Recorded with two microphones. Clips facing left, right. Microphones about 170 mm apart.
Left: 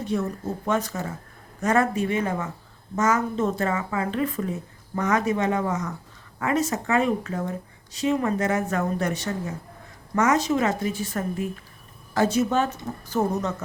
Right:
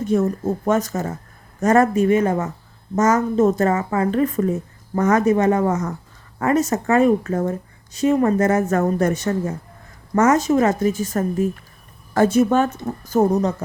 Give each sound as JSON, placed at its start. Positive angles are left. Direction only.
{"t": 0.0, "sound": "speech", "side_deg": -45}
{"t": 13.1, "sound": "speech", "side_deg": -40}